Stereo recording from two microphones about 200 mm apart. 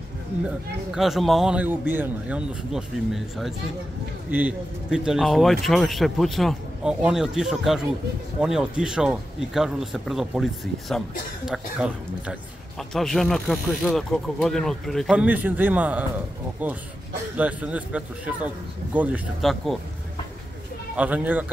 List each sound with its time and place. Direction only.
0.9 s a man's voice: centre (ahead or behind)
20.9 s speech: 5° right (ahead or behind)